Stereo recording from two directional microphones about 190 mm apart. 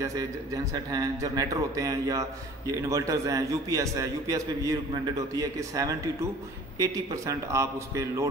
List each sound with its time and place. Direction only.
0.7 s a man's voice: 20° right (ahead or behind)